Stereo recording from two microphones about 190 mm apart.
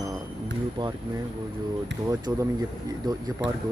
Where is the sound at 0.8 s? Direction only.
25° right (ahead or behind).